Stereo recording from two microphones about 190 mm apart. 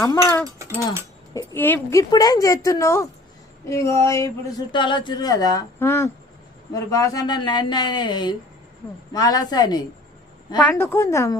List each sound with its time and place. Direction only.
0.0 s a woman's voice: 15° left (ahead or behind)
0.4 s a sound: 15° right (ahead or behind)
1.3 s a woman's voice: 15° left (ahead or behind)
10.6 s a woman's voice: 10° left (ahead or behind)